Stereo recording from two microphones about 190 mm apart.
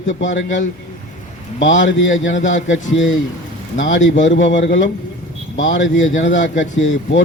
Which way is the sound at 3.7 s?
75° left (ahead or behind).